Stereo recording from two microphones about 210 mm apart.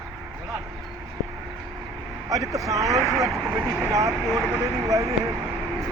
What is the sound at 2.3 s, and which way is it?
Speech, 15° right (ahead or behind).